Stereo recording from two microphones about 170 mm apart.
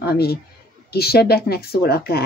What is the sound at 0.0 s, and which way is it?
A man's voice, 70° left (ahead or behind).